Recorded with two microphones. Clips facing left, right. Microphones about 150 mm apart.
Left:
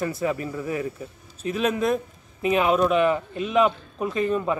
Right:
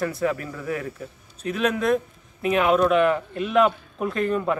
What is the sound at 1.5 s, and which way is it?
A man's voice, centre (ahead or behind).